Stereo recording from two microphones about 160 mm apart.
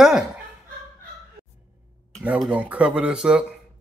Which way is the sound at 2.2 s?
10° right (ahead or behind).